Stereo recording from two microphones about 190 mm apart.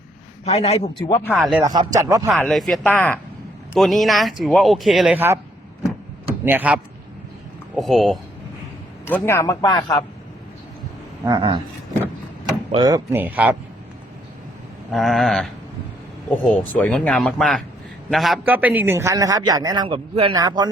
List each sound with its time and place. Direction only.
0.4 s a man's voice: 30° left (ahead or behind)
1.3 s speech: centre (ahead or behind)
1.6 s speech: 20° right (ahead or behind)
2.3 s speech: centre (ahead or behind)
6.4 s speech: 10° right (ahead or behind)
7.8 s speech: centre (ahead or behind)
9.0 s speech: 10° left (ahead or behind)
11.3 s a man's voice: 25° right (ahead or behind)
12.7 s speech: 20° right (ahead or behind)
14.9 s a man's voice: centre (ahead or behind); by 20.7 s 20° right (ahead or behind)